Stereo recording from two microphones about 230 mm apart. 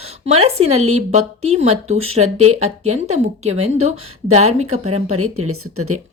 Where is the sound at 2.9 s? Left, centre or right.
Right.